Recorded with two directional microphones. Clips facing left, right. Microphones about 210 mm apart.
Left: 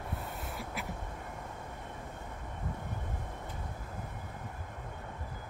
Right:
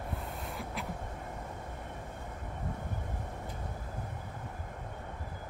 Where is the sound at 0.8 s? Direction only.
5° left (ahead or behind).